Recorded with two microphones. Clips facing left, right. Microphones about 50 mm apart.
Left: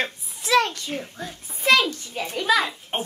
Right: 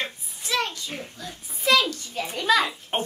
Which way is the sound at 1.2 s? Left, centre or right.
Left.